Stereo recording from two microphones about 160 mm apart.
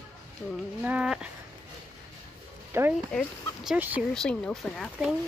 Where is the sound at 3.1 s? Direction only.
5° left (ahead or behind).